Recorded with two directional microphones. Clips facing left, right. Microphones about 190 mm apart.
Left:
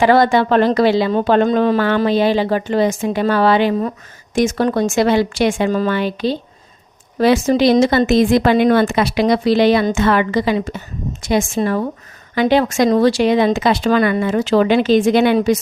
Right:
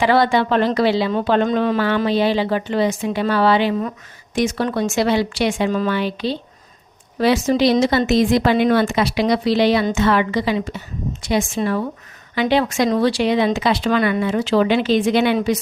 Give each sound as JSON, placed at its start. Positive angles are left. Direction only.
{"t": 0.0, "sound": "speech", "side_deg": 45}